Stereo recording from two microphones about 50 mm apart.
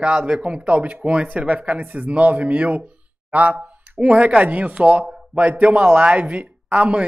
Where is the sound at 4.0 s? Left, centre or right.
Right.